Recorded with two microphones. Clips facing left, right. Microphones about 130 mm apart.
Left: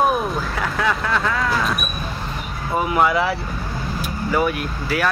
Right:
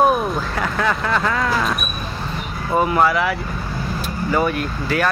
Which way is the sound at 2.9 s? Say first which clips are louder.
Left 1 dB; 10° left (ahead or behind).